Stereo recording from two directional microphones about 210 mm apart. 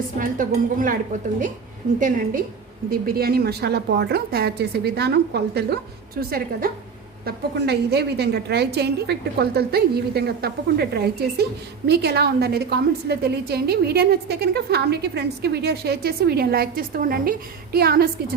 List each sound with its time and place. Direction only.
0.2 s speech: 40° right (ahead or behind)
2.0 s a woman's voice: 40° right (ahead or behind)